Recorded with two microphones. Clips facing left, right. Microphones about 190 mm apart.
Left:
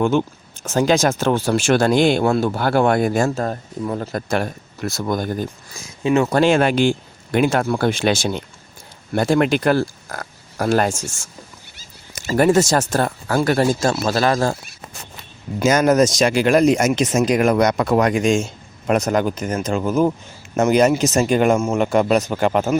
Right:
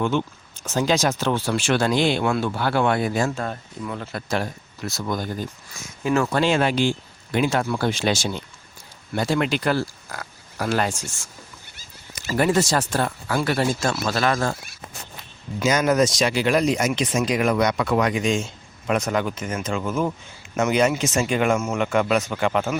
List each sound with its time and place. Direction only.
0.0 s speech: 45° left (ahead or behind)
6.0 s speech: 20° left (ahead or behind)
6.3 s a man's voice: 50° left (ahead or behind); by 14.5 s 35° left (ahead or behind)
15.5 s a man's voice: 45° left (ahead or behind)